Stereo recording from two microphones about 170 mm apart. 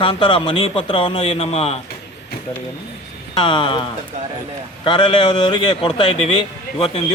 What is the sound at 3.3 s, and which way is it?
Speech, 30° left (ahead or behind).